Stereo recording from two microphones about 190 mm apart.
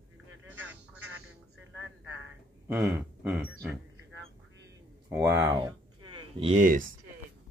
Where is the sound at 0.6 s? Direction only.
10° right (ahead or behind).